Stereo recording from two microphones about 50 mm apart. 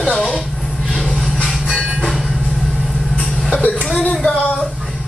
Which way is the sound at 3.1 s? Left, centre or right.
Left.